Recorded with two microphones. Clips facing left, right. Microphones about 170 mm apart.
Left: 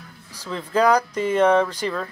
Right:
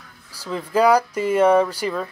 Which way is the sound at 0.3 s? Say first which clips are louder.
Right 2 dB; 10° right (ahead or behind).